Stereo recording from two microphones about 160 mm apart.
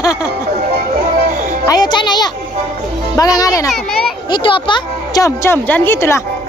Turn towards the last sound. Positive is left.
turn(degrees=15)  # may be behind; listen again after turning